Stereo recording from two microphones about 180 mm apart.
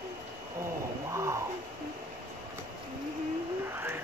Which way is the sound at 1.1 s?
15° right (ahead or behind).